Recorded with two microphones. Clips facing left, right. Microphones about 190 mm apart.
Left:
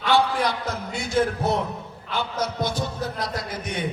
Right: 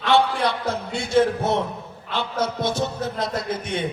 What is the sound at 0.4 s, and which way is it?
A man's voice, 30° right (ahead or behind).